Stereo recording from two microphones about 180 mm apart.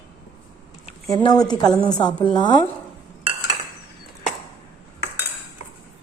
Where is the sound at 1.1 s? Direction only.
25° left (ahead or behind).